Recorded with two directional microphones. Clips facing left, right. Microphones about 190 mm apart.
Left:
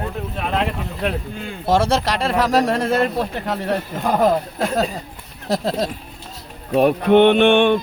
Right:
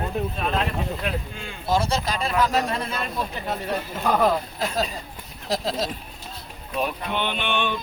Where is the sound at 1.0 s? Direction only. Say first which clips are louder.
Left 6 dB; 70° left (ahead or behind).